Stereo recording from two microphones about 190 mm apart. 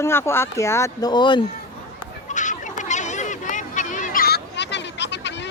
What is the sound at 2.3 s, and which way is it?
Fowl, 40° left (ahead or behind).